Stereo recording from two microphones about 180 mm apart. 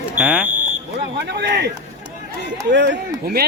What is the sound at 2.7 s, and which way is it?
Speech, 75° right (ahead or behind).